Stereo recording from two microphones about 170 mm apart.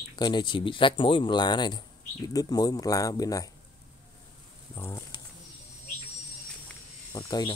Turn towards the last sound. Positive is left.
turn(degrees=25)  # may be behind; listen again after turning